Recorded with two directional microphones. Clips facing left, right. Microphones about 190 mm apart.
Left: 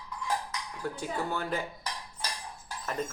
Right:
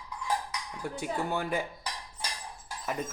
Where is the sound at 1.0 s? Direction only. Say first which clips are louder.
Right 2 dB; 15° right (ahead or behind).